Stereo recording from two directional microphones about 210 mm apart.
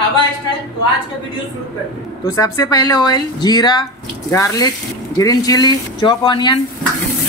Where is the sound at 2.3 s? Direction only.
15° left (ahead or behind).